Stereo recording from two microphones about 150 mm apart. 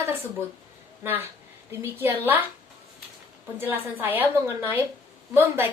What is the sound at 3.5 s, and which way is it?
A woman's voice, 15° right (ahead or behind).